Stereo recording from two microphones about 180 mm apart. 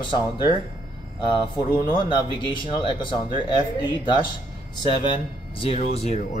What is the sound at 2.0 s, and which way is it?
Speech, 25° left (ahead or behind).